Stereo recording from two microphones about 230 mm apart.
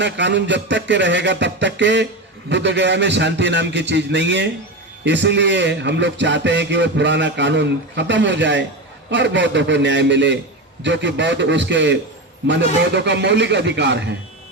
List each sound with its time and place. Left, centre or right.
0.0 s speech: right